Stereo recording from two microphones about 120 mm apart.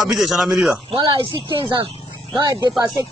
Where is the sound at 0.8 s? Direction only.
45° right (ahead or behind).